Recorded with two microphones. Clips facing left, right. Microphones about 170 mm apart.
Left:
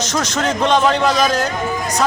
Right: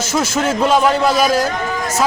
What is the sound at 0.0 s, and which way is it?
A man's voice, 5° right (ahead or behind).